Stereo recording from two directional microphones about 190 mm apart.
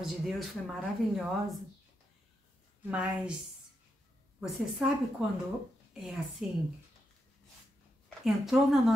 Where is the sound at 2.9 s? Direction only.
5° right (ahead or behind).